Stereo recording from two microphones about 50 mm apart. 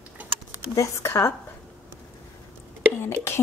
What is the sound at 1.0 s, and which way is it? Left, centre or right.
Speech, left.